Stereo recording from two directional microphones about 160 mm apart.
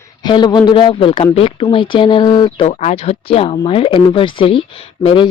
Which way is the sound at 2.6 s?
40° left (ahead or behind).